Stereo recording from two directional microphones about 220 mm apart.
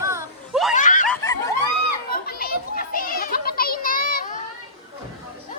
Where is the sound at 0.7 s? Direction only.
35° left (ahead or behind).